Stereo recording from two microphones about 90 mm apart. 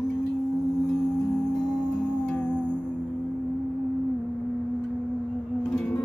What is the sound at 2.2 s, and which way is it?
Music, 20° left (ahead or behind).